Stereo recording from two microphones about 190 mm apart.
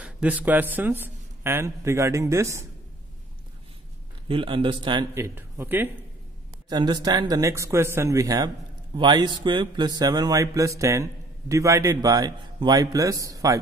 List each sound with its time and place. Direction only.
0.0 s a man's voice: 5° right (ahead or behind)
4.3 s speech: 30° right (ahead or behind)
5.1 s speech: 15° right (ahead or behind)
6.7 s speech: 20° right (ahead or behind)